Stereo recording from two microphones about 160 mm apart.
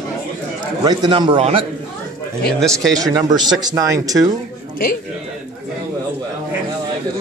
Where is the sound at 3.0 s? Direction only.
25° right (ahead or behind).